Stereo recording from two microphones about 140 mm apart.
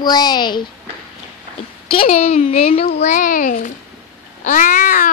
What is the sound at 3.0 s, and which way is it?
Speech, 65° left (ahead or behind).